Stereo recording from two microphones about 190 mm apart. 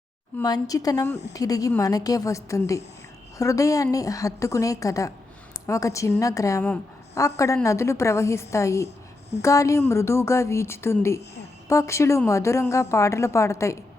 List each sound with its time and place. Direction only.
0.4 s a woman's voice: 20° left (ahead or behind)